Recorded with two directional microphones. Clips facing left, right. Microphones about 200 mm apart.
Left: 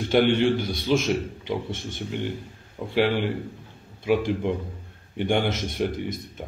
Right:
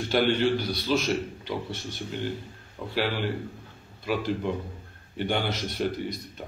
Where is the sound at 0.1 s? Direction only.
20° left (ahead or behind).